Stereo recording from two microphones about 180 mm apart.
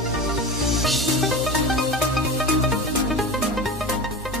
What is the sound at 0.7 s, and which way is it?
Music, centre (ahead or behind).